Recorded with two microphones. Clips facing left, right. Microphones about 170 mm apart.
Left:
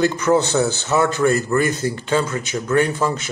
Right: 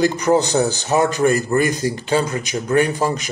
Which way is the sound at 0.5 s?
35° right (ahead or behind).